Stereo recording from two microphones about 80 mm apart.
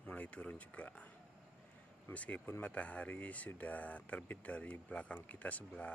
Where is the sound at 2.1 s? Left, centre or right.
Centre.